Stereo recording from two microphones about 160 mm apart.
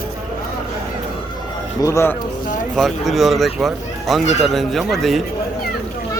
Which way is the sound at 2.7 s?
Centre (ahead or behind).